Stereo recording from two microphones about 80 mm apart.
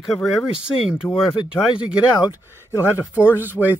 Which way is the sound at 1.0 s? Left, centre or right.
Left.